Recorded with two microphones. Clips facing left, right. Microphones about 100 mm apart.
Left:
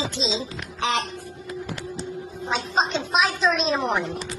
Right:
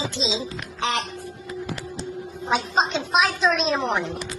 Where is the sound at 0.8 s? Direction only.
20° left (ahead or behind).